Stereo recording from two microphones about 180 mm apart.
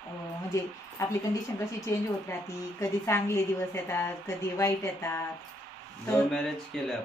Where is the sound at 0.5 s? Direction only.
20° left (ahead or behind).